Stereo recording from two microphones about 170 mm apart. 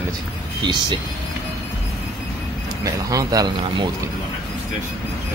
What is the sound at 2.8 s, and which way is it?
Speech, 20° right (ahead or behind).